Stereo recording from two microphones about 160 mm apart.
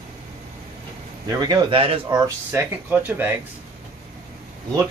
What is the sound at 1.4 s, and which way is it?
Speech, 25° right (ahead or behind).